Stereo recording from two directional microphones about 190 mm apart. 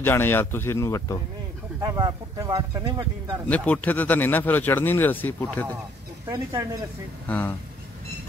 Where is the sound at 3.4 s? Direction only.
5° left (ahead or behind).